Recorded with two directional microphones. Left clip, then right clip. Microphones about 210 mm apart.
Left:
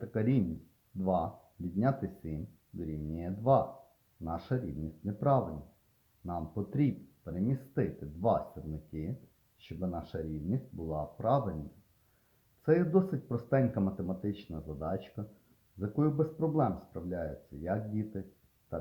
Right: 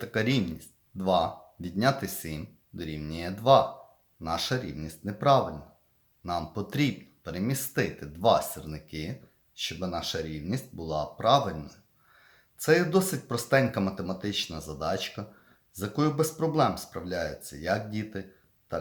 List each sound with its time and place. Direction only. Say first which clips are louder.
0.0 s speech: right 5 dB; 5° right (ahead or behind)
12.9 s speech: right 4 dB; 5° right (ahead or behind)
14.5 s speech: right 6 dB; 15° right (ahead or behind)
14.8 s speech: right 8 dB; 5° right (ahead or behind)